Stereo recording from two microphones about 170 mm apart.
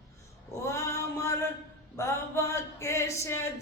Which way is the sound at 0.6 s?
15° left (ahead or behind).